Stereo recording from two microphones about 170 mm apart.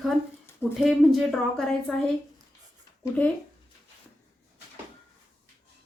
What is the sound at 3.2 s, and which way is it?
Speech, 10° left (ahead or behind).